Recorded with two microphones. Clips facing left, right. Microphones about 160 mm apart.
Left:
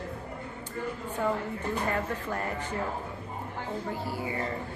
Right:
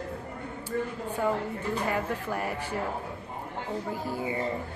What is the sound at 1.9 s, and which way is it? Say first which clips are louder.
Speech: right 1 dB; 10° right (ahead or behind).